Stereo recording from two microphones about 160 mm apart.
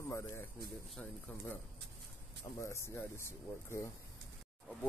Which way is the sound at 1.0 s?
10° left (ahead or behind).